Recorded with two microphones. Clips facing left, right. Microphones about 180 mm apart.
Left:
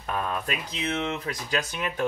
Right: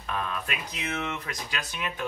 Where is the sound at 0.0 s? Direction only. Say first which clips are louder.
Left 3 dB; 45° left (ahead or behind).